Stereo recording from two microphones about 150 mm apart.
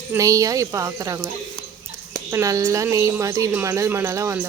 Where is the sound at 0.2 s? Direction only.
20° right (ahead or behind).